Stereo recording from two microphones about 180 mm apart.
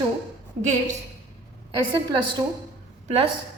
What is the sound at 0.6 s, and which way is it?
Speech, 40° right (ahead or behind).